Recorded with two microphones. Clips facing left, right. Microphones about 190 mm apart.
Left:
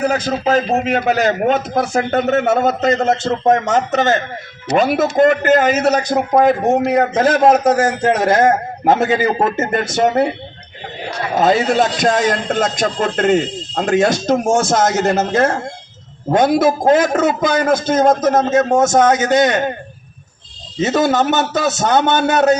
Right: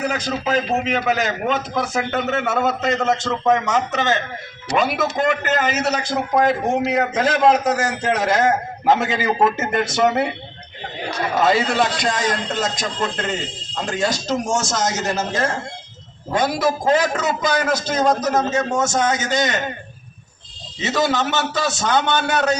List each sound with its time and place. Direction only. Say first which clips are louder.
0.0 s a man's voice: left 6 dB; 50° left (ahead or behind)
11.3 s a man's voice: left 4 dB; 50° left (ahead or behind)
20.8 s a man's voice: left 6 dB; 55° left (ahead or behind)